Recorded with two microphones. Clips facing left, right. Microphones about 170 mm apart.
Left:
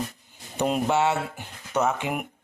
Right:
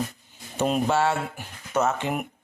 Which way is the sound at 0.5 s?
15° left (ahead or behind).